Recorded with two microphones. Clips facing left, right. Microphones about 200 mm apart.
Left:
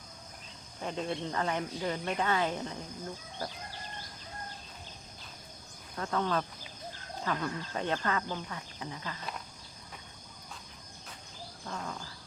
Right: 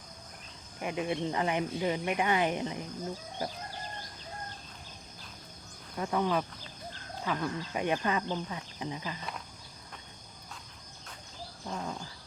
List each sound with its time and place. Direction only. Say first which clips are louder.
0.8 s speech: right 3 dB; 15° right (ahead or behind)
6.0 s speech: right 2 dB; 15° right (ahead or behind)
11.6 s speech: right 2 dB; 15° right (ahead or behind)